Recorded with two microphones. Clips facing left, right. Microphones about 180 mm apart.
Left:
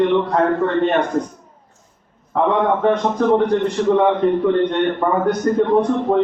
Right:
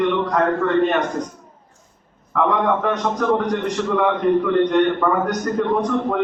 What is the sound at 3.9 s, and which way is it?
A man's voice, 30° left (ahead or behind).